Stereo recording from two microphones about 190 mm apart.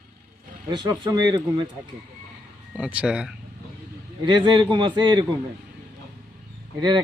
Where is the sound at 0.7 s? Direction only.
25° right (ahead or behind).